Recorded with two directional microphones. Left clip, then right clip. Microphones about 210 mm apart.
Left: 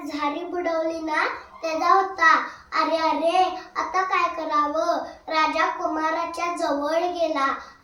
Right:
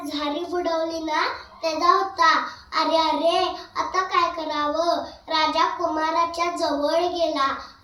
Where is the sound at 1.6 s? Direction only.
15° left (ahead or behind).